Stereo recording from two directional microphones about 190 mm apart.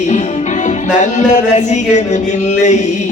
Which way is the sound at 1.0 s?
40° left (ahead or behind).